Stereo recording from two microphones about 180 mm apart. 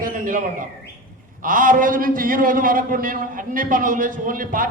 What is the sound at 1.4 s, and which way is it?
A man's voice, 50° right (ahead or behind).